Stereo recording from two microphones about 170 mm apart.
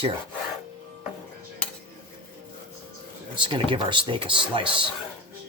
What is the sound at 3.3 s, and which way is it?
Speech, 30° right (ahead or behind).